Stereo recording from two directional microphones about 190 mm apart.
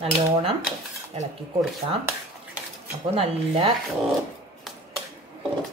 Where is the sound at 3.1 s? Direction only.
30° right (ahead or behind).